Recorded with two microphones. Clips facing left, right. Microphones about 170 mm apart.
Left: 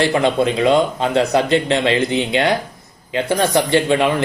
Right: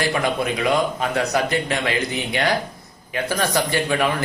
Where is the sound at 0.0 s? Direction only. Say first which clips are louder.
Left 6 dB; 25° left (ahead or behind).